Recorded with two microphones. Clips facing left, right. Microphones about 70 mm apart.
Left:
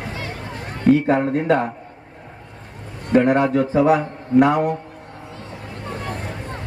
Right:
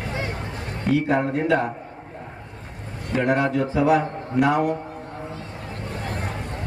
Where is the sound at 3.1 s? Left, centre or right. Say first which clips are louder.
Left 5 dB; left.